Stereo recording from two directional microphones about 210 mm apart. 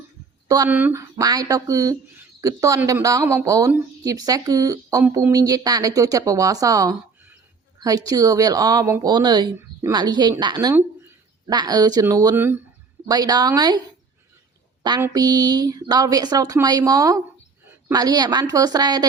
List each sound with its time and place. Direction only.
0.4 s speech: 15° right (ahead or behind)
14.8 s speech: 20° right (ahead or behind)